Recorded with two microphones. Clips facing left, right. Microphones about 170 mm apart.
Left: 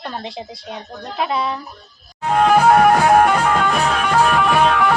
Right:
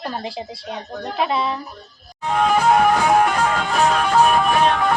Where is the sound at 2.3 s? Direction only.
60° left (ahead or behind); by 4.9 s 80° left.